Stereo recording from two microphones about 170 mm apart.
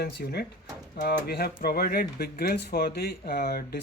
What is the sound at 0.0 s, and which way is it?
Speech, 70° left (ahead or behind).